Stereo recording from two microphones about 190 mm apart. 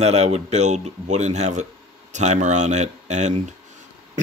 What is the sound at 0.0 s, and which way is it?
Speech, 35° right (ahead or behind).